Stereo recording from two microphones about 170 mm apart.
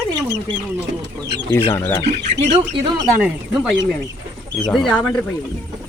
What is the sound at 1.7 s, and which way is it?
Speech, 15° left (ahead or behind).